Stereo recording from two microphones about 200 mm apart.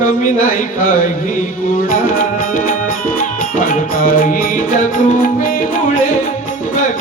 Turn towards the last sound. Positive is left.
turn(degrees=40)  # may be behind; listen again after turning